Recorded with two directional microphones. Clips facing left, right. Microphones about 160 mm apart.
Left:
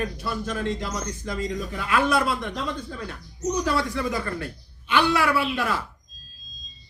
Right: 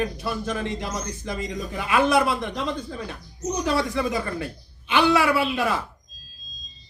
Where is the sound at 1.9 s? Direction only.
20° right (ahead or behind).